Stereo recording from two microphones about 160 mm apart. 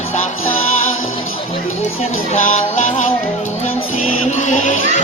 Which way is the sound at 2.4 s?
50° left (ahead or behind).